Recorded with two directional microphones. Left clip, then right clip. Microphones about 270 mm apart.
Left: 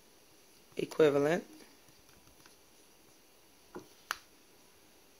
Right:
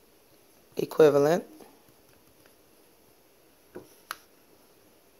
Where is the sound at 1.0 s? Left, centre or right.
Centre.